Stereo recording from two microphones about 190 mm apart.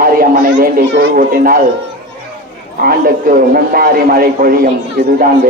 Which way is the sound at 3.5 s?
50° right (ahead or behind).